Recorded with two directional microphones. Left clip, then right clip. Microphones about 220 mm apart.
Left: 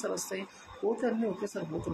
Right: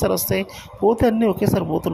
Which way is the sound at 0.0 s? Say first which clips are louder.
Right 14 dB; 40° right (ahead or behind).